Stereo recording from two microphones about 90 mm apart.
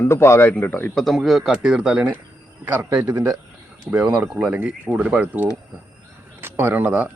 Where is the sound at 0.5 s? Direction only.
20° left (ahead or behind).